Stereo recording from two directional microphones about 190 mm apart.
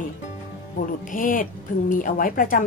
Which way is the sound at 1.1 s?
45° left (ahead or behind).